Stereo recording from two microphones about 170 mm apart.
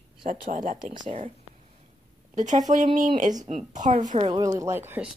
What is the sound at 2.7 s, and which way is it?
Speech, 45° right (ahead or behind).